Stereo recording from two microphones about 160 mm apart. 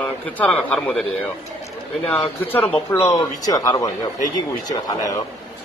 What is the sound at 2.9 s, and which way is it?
Speech, 20° left (ahead or behind).